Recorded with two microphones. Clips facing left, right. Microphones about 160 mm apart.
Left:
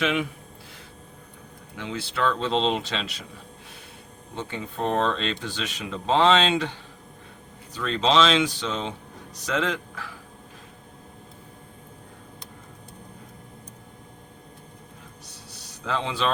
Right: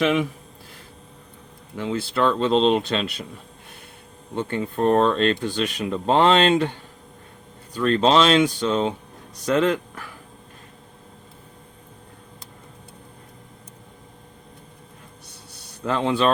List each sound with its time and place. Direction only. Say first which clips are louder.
1.7 s speech: right 7 dB; 55° right (ahead or behind)
4.4 s speech: right 7 dB; 55° right (ahead or behind)
15.6 s speech: right 6 dB; 55° right (ahead or behind)